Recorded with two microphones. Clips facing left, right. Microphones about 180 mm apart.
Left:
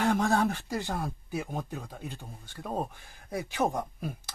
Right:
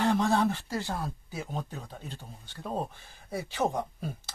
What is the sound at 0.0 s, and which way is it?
Speech, 10° left (ahead or behind).